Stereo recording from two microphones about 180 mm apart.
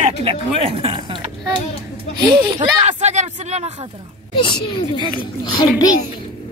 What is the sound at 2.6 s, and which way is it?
Speech, 40° right (ahead or behind).